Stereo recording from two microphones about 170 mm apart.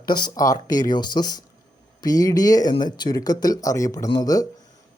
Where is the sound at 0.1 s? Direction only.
25° left (ahead or behind).